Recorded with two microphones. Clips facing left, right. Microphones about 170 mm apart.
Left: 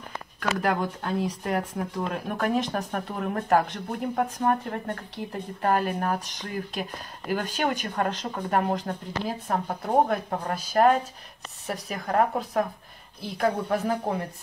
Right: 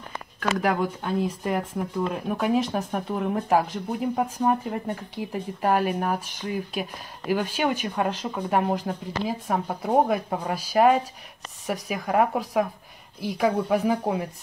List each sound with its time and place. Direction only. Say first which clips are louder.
0.4 s speech: right 2 dB; 5° right (ahead or behind)